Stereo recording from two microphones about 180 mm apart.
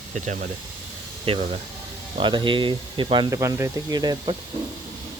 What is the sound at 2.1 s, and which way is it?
Speech, 25° right (ahead or behind).